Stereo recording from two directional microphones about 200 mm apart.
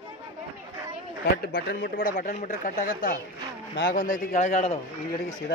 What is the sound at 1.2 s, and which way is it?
Speech, 55° left (ahead or behind).